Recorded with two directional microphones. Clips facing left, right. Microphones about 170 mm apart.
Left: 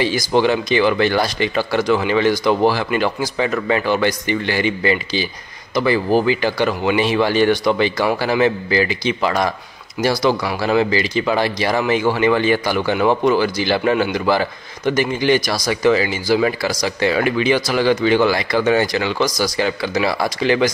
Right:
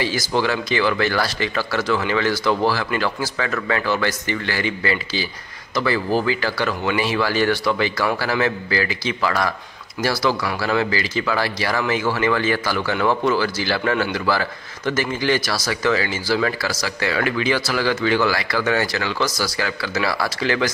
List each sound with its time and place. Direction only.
0.0 s speech: 20° left (ahead or behind)